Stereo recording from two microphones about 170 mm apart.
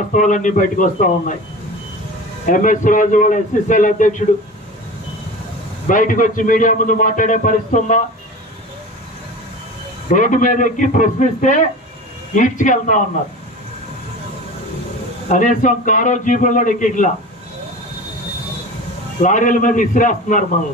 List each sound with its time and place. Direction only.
0.1 s a man's voice: 45° left (ahead or behind)
2.4 s a man's voice: 50° left (ahead or behind)
5.9 s a man's voice: 50° left (ahead or behind)
10.1 s a man's voice: 50° left (ahead or behind)
15.2 s a man's voice: 45° left (ahead or behind)
19.2 s a man's voice: 50° left (ahead or behind)